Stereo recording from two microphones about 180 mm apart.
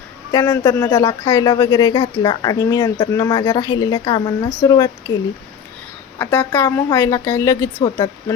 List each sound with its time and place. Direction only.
0.3 s speech: 20° left (ahead or behind)
6.1 s a woman's voice: 10° left (ahead or behind)
7.8 s speech: 30° left (ahead or behind)